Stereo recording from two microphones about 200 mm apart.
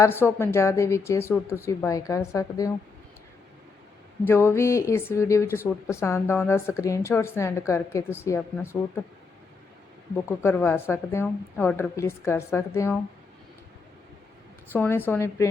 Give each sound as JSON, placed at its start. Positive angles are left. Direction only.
{"t": 0.0, "sound": "speech", "side_deg": 10}
{"t": 4.2, "sound": "speech", "side_deg": 10}
{"t": 10.2, "sound": "speech", "side_deg": 10}
{"t": 14.7, "sound": "speech", "side_deg": 10}